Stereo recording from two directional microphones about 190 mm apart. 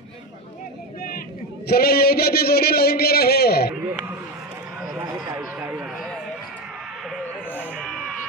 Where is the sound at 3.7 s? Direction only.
10° right (ahead or behind).